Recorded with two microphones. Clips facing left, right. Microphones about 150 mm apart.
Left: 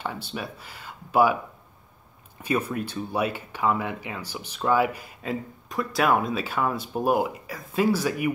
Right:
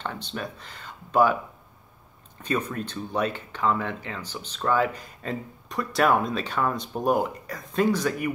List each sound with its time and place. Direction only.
0.0 s speech: 10° left (ahead or behind)
2.4 s speech: 10° left (ahead or behind)